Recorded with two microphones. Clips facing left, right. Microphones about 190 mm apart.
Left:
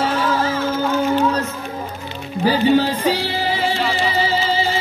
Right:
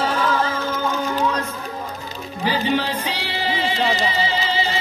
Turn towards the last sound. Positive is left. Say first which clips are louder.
# left 7 dB
turn(degrees=40)  # may be behind; listen again after turning